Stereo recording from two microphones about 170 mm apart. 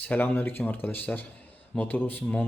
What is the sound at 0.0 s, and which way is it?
Speech, 10° left (ahead or behind).